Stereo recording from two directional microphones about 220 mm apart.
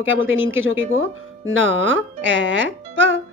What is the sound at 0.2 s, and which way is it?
Speech, 60° right (ahead or behind).